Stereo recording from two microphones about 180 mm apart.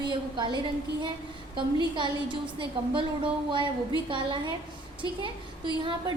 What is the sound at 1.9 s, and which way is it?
A woman's voice, 25° right (ahead or behind).